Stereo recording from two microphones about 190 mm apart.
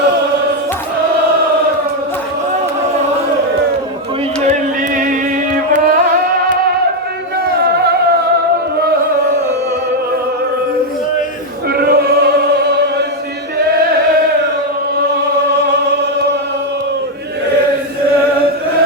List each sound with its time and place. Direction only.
7.6 s music: 60° right (ahead or behind)
11.7 s choir: 55° right (ahead or behind)